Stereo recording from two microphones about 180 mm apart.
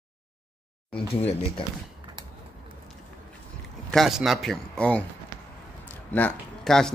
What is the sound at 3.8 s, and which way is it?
Speech, centre (ahead or behind).